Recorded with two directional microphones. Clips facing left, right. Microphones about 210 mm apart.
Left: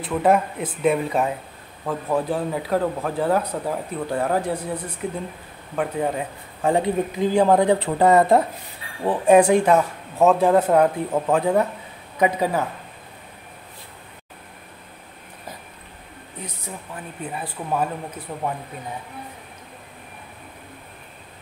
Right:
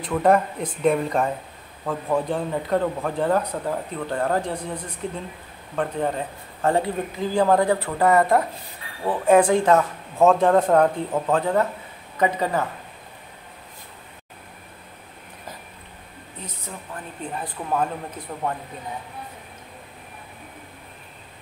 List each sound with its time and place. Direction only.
0.0 s a man's voice: 5° left (ahead or behind)
17.3 s a man's voice: 5° left (ahead or behind)